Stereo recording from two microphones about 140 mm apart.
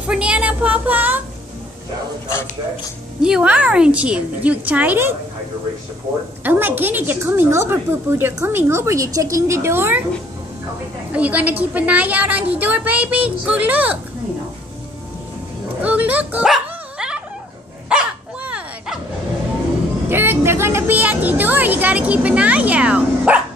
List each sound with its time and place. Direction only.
0.0 s a sound: 10° right (ahead or behind)
3.2 s a woman's voice: 5° right (ahead or behind)
6.4 s a woman's voice: 15° right (ahead or behind)
11.1 s a woman's voice: 10° right (ahead or behind)
15.8 s dog: 10° right (ahead or behind)
20.1 s speech: 15° right (ahead or behind)